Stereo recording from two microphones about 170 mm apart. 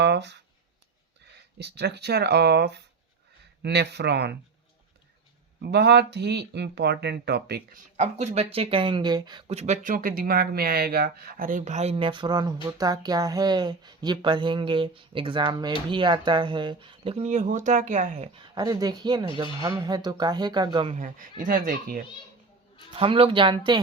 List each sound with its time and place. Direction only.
0.0 s speech: 90° right
1.5 s speech: 80° right
5.6 s speech: 80° right
7.9 s speech: 40° right (ahead or behind)
8.5 s a woman's voice: 30° right (ahead or behind)
9.5 s a woman's voice: 40° right (ahead or behind)
18.5 s a woman's voice: 20° right (ahead or behind)
21.0 s speech: 50° right (ahead or behind)
23.0 s speech: 35° right (ahead or behind)